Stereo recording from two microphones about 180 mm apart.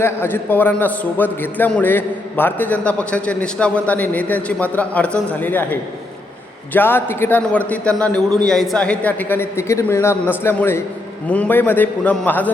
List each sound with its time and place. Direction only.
0.0 s a man's voice: 10° left (ahead or behind)
6.7 s a man's voice: 10° left (ahead or behind)